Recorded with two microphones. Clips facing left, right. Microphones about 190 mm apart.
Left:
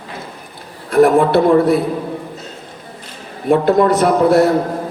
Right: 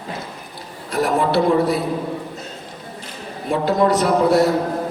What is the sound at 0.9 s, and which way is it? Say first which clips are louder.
Speech: left 7 dB; 55° left (ahead or behind).